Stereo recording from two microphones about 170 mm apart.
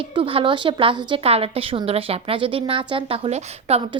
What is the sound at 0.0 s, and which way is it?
A woman's voice, 30° right (ahead or behind).